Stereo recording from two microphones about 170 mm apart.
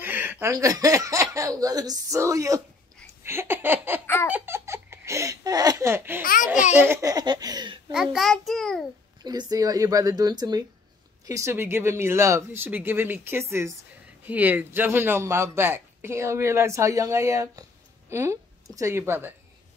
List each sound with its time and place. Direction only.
0.0 s a man's voice: 10° right (ahead or behind)
4.0 s laughter: 10° left (ahead or behind)
4.3 s speech: 15° right (ahead or behind)
6.2 s a child's voice: 55° left (ahead or behind)
6.7 s speech: 15° right (ahead or behind)
7.9 s a child's voice: 5° right (ahead or behind)
9.2 s a man's voice: 25° right (ahead or behind)